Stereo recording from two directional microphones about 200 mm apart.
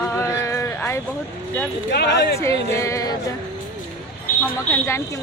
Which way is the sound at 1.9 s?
55° left (ahead or behind).